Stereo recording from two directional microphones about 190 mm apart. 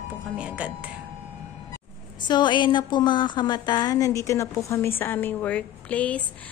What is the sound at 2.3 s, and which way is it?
A woman's voice, 25° left (ahead or behind).